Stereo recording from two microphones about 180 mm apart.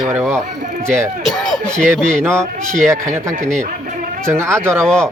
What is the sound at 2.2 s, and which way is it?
Speech, 15° right (ahead or behind).